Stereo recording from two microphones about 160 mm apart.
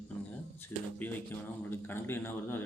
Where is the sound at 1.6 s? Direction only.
15° left (ahead or behind).